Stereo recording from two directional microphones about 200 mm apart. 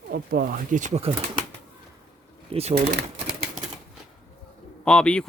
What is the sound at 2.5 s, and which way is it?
Speech, 30° right (ahead or behind).